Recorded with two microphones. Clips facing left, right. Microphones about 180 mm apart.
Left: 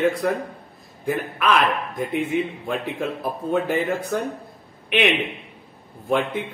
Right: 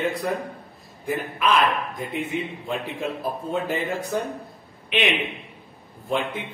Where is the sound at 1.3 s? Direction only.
55° left (ahead or behind).